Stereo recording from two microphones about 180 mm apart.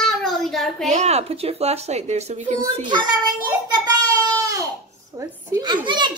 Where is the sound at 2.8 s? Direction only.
25° right (ahead or behind).